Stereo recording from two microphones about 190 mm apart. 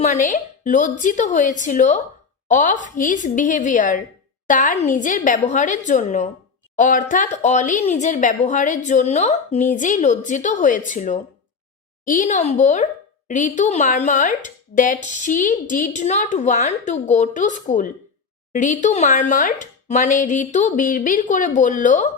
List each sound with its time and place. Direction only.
0.0 s speech: 40° left (ahead or behind)